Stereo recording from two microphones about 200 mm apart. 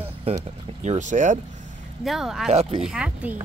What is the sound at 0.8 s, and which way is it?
Speech, 40° right (ahead or behind).